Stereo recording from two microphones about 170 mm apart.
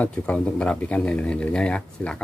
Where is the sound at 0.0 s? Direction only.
5° left (ahead or behind).